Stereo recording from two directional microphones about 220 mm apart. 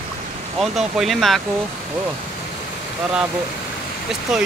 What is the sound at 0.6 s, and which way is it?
Speech, centre (ahead or behind).